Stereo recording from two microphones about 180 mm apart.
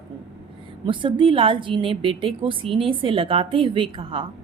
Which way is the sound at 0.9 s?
30° right (ahead or behind).